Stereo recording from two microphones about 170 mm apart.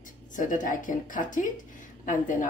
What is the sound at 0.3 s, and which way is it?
A woman's voice, 50° left (ahead or behind).